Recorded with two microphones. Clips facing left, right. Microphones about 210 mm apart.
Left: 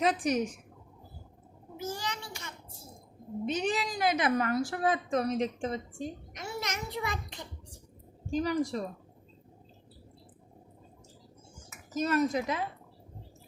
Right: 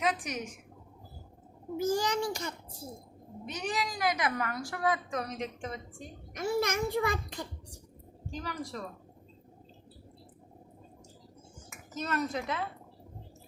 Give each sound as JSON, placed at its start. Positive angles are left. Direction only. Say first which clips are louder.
{"t": 0.0, "sound": "a woman's voice", "louder": "left 5 dB", "side_deg": 35}
{"t": 2.0, "sound": "a child's voice", "louder": "right 9 dB", "side_deg": -40}
{"t": 3.4, "sound": "a woman's voice", "louder": "left 4 dB", "side_deg": 25}
{"t": 6.3, "sound": "a child's voice", "louder": "right 8 dB", "side_deg": -50}
{"t": 8.4, "sound": "a woman's voice", "louder": "left 9 dB", "side_deg": 15}
{"t": 11.9, "sound": "a woman's voice", "louder": "left 5 dB", "side_deg": 10}